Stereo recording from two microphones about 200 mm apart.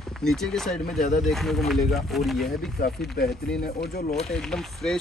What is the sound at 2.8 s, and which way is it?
Speech, 50° left (ahead or behind).